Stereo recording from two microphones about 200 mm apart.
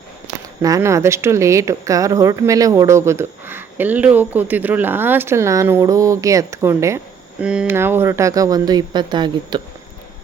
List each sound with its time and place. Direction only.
0.6 s speech: 15° right (ahead or behind)